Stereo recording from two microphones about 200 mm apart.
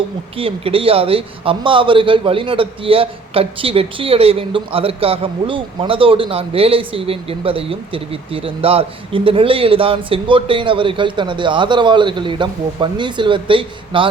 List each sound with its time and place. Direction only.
0.3 s a man's voice: 25° right (ahead or behind)